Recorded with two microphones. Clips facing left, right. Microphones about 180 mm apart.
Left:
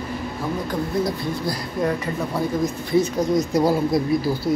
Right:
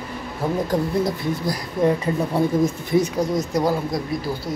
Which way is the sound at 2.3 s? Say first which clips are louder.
Right 3 dB; 25° right (ahead or behind).